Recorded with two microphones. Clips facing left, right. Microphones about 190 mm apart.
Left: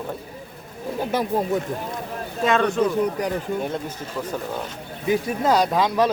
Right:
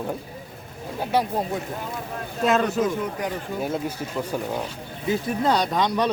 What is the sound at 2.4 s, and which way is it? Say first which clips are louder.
Speech: left 1 dB; 5° right (ahead or behind).